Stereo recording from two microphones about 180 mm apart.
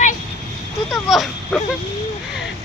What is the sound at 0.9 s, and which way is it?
Speech, centre (ahead or behind).